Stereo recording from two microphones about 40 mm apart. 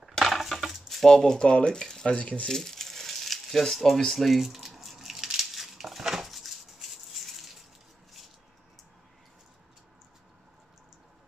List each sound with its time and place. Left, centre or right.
0.2 s a sound: centre
1.0 s speech: centre
2.1 s speech: left
2.4 s a sound: centre
3.7 s speech: centre
4.5 s dishes: centre